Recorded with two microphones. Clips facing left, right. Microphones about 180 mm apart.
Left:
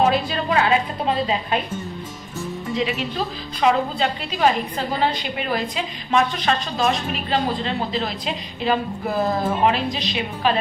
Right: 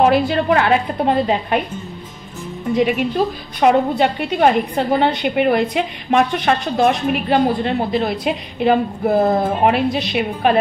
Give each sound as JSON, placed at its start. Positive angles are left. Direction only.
{"t": 0.1, "sound": "a woman's voice", "side_deg": -60}
{"t": 2.7, "sound": "a woman's voice", "side_deg": -55}